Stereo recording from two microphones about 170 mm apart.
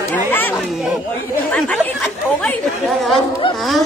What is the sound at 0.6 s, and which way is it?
Chatter, centre (ahead or behind).